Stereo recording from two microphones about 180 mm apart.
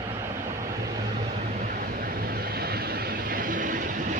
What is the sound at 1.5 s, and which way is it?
Vehicle, 50° right (ahead or behind).